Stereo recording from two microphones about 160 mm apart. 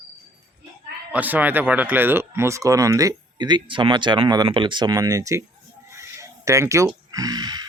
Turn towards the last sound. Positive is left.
turn(degrees=-25)  # may be behind; listen again after turning